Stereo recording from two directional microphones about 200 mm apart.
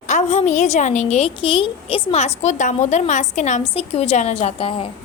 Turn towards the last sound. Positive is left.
turn(degrees=25)  # may be behind; listen again after turning